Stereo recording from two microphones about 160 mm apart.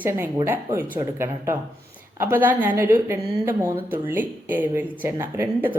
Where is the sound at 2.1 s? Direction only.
15° right (ahead or behind).